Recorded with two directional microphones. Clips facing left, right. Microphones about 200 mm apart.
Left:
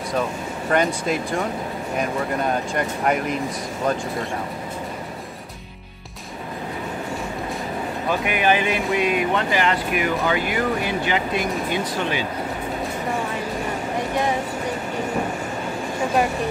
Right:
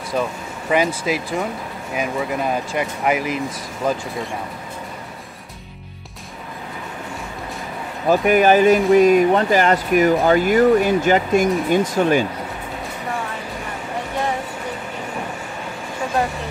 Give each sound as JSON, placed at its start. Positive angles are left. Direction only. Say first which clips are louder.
{"t": 0.7, "sound": "speech", "louder": "right 2 dB", "side_deg": -5}
{"t": 8.1, "sound": "speech", "louder": "right 7 dB", "side_deg": -40}